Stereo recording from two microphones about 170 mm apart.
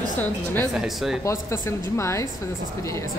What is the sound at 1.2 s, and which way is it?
A woman's voice, 15° left (ahead or behind).